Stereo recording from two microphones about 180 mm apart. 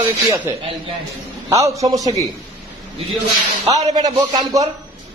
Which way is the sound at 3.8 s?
40° right (ahead or behind).